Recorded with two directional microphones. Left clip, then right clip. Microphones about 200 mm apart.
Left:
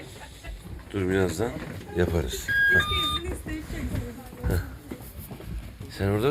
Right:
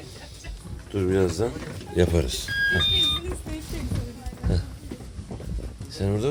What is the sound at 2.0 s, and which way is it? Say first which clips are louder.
Speech: right 4 dB; 30° right (ahead or behind).